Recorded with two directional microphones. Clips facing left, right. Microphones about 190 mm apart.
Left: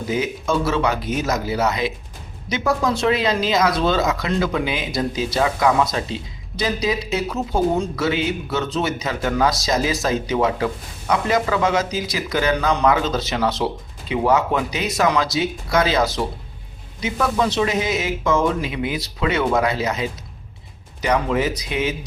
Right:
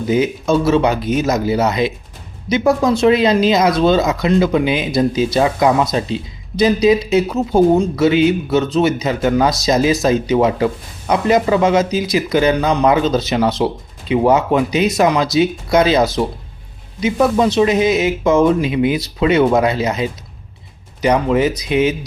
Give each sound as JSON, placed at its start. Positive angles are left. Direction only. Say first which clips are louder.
{"t": 0.1, "sound": "speech", "louder": "right 7 dB", "side_deg": -25}